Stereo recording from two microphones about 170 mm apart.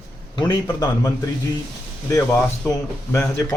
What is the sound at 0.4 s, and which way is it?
Speech, 20° left (ahead or behind).